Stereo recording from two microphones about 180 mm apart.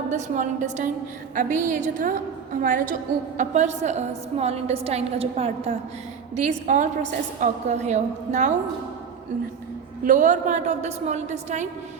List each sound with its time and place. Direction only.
0.1 s a woman's voice: 45° right (ahead or behind)
6.7 s a woman's voice: 45° right (ahead or behind)
10.0 s a woman's voice: 45° right (ahead or behind)